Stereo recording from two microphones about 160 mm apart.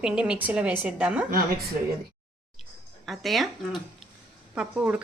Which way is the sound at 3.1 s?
Centre (ahead or behind).